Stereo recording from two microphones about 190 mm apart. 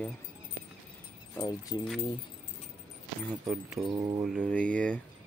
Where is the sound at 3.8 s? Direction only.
20° right (ahead or behind).